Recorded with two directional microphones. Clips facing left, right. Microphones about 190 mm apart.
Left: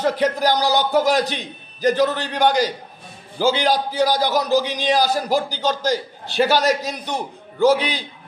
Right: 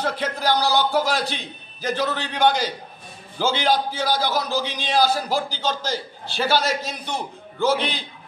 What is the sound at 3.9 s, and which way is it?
Speech, 15° left (ahead or behind).